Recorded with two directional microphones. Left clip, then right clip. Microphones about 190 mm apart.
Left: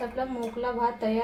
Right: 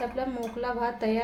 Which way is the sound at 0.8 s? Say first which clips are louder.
Left 2 dB; 20° right (ahead or behind).